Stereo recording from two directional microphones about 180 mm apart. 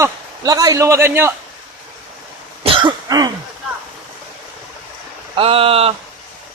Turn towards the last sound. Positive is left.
turn(degrees=-30)  # may be behind; listen again after turning